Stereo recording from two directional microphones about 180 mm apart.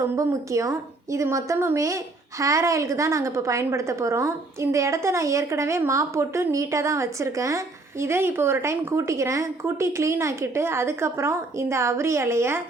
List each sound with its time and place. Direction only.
0.2 s a woman's voice: 15° right (ahead or behind)